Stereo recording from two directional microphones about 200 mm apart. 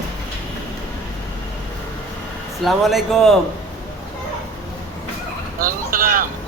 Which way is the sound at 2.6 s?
Centre (ahead or behind).